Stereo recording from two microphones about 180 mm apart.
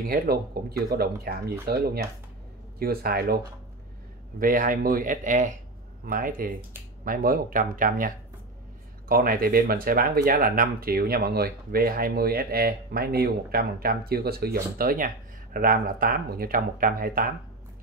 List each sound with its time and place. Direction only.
0.0 s speech: 55° right (ahead or behind)
4.4 s speech: 50° right (ahead or behind)
9.1 s speech: 55° right (ahead or behind)